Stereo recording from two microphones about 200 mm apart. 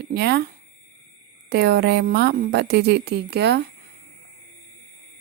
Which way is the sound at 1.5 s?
55° right (ahead or behind).